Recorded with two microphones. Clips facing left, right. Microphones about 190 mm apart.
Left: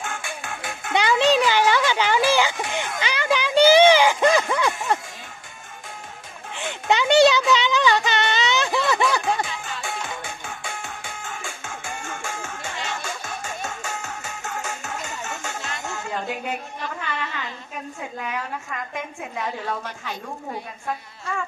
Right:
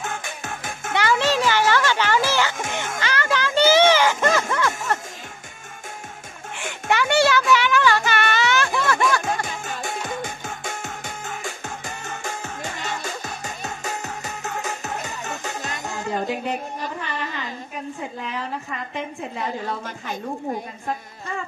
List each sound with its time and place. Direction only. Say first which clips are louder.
0.0 s music: right 1 dB; 40° right (ahead or behind)
0.9 s music: left 2 dB; 15° left (ahead or behind)
6.5 s a sound: left 1 dB; 20° left (ahead or behind)
9.2 s music: left 1 dB; 40° right (ahead or behind)
16.8 s music: right 1 dB; 40° right (ahead or behind)